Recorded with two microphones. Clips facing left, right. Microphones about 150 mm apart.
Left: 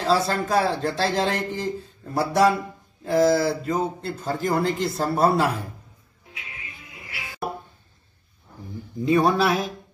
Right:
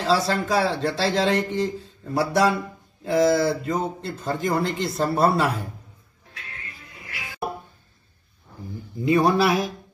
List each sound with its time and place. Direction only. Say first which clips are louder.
0.0 s speech: even; centre (ahead or behind)
9.0 s speech: right 1 dB; centre (ahead or behind)